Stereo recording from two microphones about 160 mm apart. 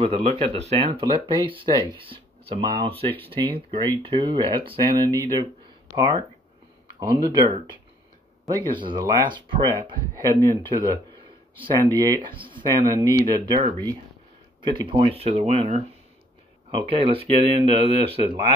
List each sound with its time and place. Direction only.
0.0 s speech: 40° right (ahead or behind)
1.1 s speech: 30° right (ahead or behind)
8.5 s speech: 30° right (ahead or behind)
14.6 s speech: 30° right (ahead or behind)